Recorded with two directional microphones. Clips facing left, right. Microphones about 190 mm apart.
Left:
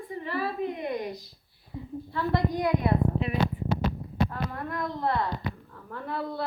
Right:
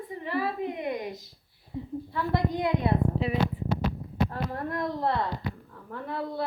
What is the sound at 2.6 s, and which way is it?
A woman's voice, 30° right (ahead or behind).